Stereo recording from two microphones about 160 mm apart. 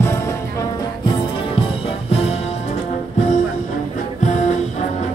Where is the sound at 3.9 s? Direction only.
50° left (ahead or behind).